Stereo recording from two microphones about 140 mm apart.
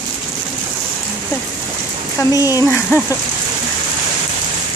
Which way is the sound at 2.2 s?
25° left (ahead or behind).